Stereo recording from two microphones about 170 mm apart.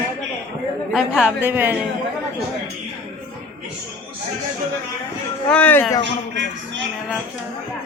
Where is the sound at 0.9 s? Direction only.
5° right (ahead or behind).